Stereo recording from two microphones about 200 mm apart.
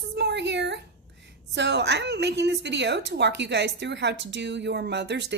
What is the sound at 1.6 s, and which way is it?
A woman's voice, 60° right (ahead or behind).